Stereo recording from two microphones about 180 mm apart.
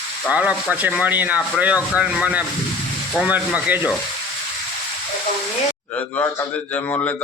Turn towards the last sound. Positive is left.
turn(degrees=15)  # may be behind; listen again after turning